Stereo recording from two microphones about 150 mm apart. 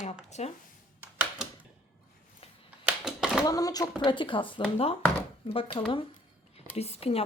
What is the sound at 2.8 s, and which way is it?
Typewriter, 5° right (ahead or behind).